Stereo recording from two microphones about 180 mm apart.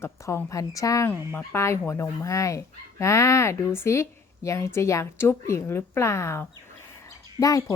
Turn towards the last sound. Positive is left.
turn(degrees=20)  # may be behind; listen again after turning